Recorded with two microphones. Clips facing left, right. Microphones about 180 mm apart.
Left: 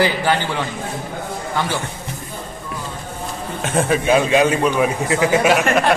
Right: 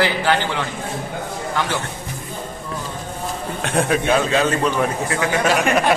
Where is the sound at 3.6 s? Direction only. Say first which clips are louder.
Left 1 dB; centre (ahead or behind).